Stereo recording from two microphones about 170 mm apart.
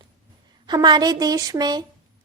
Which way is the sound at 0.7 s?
25° right (ahead or behind).